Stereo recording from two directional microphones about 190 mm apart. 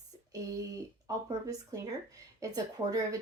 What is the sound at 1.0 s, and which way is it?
Speech, 20° right (ahead or behind).